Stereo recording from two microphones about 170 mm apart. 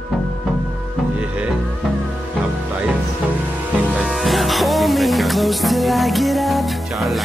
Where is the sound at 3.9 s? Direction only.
Centre (ahead or behind).